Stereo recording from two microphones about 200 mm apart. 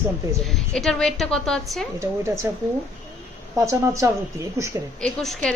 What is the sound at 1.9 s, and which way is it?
Speech, 15° right (ahead or behind).